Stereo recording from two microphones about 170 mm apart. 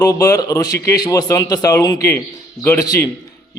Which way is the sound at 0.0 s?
20° left (ahead or behind).